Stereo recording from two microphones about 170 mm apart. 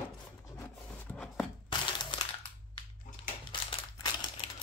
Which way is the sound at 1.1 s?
5° left (ahead or behind).